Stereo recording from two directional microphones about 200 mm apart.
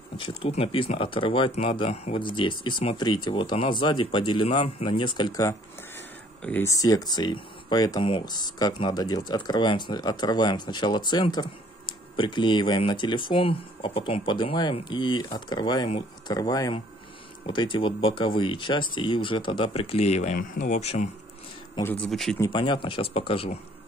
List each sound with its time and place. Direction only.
0.2 s speech: 30° left (ahead or behind)
21.7 s speech: 10° left (ahead or behind)
22.4 s speech: 25° left (ahead or behind)